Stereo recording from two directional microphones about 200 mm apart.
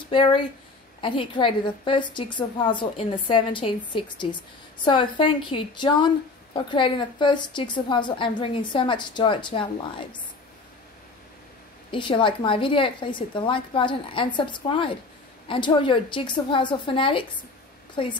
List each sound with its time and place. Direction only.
0.1 s a woman's voice: 25° left (ahead or behind)
11.9 s a woman's voice: 25° left (ahead or behind)